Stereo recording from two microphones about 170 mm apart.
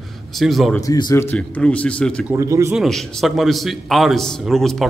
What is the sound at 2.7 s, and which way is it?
A man's voice, centre (ahead or behind).